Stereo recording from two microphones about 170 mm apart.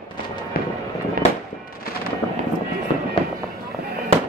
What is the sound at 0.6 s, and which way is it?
Fireworks, 60° left (ahead or behind).